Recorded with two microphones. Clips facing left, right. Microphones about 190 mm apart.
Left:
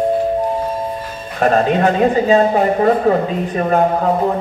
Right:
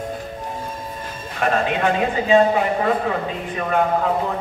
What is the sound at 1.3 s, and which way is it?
A man's voice, 40° left (ahead or behind).